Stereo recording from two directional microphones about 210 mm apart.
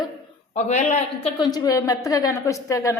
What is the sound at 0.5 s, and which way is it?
Speech, 35° left (ahead or behind).